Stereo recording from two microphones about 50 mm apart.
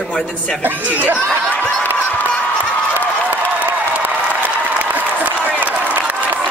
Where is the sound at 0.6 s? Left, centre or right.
Right.